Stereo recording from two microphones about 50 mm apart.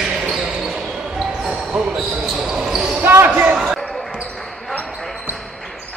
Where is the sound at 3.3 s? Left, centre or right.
Right.